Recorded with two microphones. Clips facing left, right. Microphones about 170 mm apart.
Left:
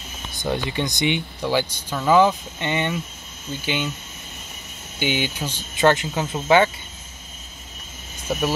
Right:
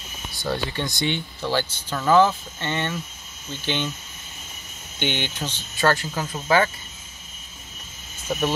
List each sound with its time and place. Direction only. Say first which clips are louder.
0.3 s speech: left 2 dB; 20° left (ahead or behind)
4.9 s speech: left 3 dB; 10° left (ahead or behind); by 6.7 s 25° left (ahead or behind)
8.3 s speech: left 1 dB; 5° left (ahead or behind)